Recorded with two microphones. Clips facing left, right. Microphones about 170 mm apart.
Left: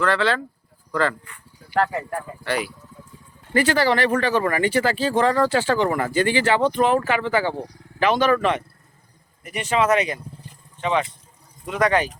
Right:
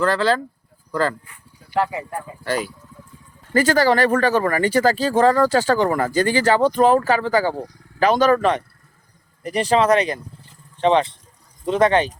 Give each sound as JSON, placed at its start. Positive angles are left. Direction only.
{"t": 0.0, "sound": "speech", "side_deg": -40}
{"t": 1.7, "sound": "speech", "side_deg": -10}
{"t": 2.4, "sound": "speech", "side_deg": -40}